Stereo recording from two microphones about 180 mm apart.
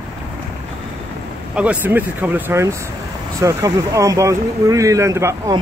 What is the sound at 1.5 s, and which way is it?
Speech, 5° right (ahead or behind).